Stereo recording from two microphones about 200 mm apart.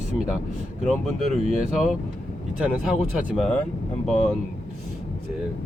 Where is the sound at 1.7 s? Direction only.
Centre (ahead or behind).